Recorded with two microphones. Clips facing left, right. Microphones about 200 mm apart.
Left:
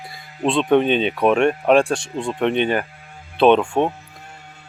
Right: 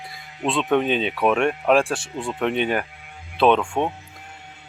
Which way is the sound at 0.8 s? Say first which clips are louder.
Left 3 dB; 5° right (ahead or behind).